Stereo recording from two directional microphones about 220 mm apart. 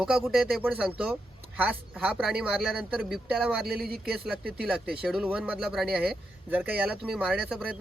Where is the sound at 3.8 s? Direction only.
45° right (ahead or behind).